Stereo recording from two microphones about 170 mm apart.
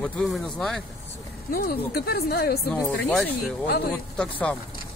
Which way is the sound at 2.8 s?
10° left (ahead or behind).